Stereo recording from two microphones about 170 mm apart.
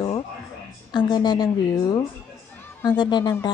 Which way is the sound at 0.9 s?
25° left (ahead or behind).